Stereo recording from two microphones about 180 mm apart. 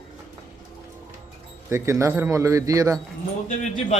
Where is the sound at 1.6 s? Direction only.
15° right (ahead or behind).